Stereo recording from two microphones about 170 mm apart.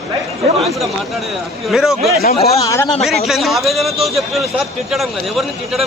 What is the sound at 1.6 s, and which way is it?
Speech, centre (ahead or behind).